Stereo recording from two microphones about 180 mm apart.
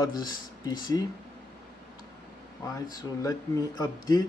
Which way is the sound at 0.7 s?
20° left (ahead or behind).